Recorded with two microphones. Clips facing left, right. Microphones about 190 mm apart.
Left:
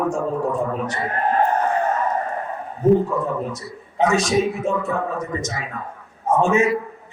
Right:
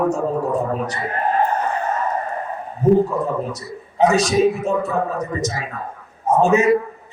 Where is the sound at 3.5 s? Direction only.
40° right (ahead or behind).